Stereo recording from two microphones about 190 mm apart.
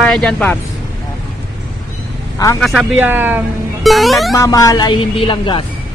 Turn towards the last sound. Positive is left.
turn(degrees=25)  # may be behind; listen again after turning